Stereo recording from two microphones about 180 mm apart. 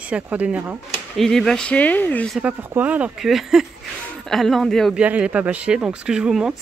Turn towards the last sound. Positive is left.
turn(degrees=-5)  # may be behind; listen again after turning